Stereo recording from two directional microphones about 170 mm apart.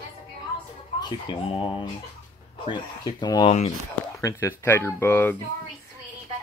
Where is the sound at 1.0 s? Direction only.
30° left (ahead or behind).